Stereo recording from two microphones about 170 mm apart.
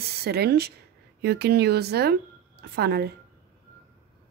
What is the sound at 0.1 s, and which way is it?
A woman's voice, 70° right (ahead or behind).